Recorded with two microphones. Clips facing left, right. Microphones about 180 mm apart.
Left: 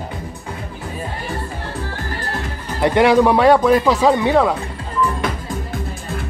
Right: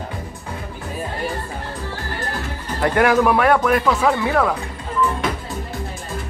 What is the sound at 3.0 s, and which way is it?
Speech, 25° left (ahead or behind).